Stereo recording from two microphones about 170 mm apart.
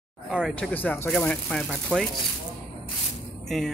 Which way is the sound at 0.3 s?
Centre (ahead or behind).